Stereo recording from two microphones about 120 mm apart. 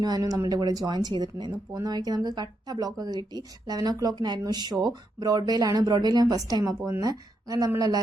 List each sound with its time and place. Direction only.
0.0 s speech: 30° right (ahead or behind)